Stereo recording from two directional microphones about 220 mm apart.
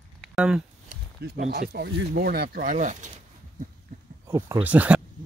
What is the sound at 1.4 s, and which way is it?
Speech, 50° right (ahead or behind).